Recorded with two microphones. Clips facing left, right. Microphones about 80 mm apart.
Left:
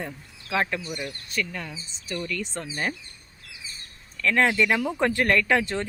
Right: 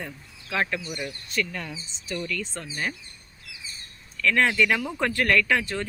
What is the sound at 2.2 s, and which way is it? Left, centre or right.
Speech, left.